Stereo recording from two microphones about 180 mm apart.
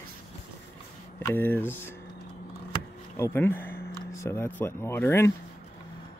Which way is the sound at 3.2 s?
15° left (ahead or behind).